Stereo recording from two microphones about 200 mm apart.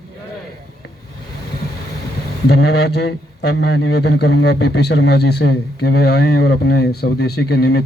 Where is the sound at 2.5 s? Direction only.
55° left (ahead or behind).